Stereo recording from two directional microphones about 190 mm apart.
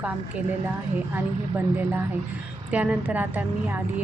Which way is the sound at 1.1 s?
10° right (ahead or behind).